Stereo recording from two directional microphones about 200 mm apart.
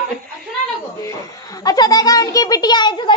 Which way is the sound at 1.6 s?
20° left (ahead or behind).